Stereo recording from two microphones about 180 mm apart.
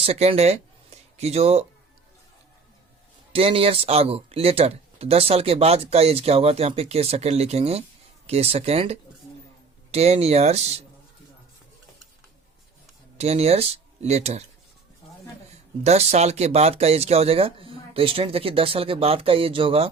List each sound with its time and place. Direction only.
0.0 s speech: 35° right (ahead or behind)
3.3 s speech: 30° right (ahead or behind)
13.1 s speech: 35° right (ahead or behind)
15.8 s speech: 35° right (ahead or behind)